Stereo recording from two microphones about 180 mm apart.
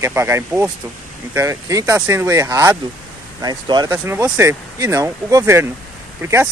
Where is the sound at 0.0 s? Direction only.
15° right (ahead or behind).